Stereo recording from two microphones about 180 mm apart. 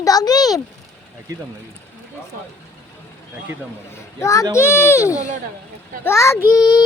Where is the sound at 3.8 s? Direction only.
15° left (ahead or behind).